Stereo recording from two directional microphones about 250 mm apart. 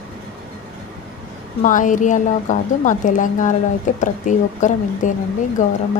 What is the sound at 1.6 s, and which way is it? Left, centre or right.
A woman's voice, left.